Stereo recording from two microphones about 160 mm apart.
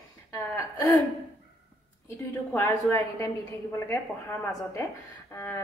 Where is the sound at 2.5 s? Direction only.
15° left (ahead or behind).